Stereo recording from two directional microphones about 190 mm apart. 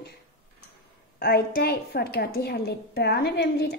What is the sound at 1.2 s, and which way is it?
A woman's voice, 55° left (ahead or behind).